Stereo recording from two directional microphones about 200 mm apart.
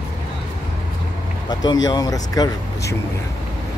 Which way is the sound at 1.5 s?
20° left (ahead or behind).